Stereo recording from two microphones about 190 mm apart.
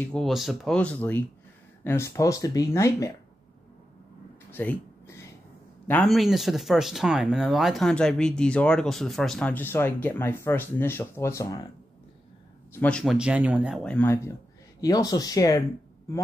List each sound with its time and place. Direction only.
0.0 s speech: 5° left (ahead or behind)
4.5 s a sound: 10° left (ahead or behind)
5.9 s speech: 5° left (ahead or behind)
12.7 s speech: 5° left (ahead or behind)